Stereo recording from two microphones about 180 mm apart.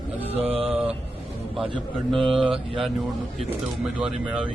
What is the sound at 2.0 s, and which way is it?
Speech, centre (ahead or behind).